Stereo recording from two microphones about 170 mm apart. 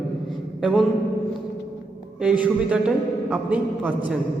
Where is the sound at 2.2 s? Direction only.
5° right (ahead or behind).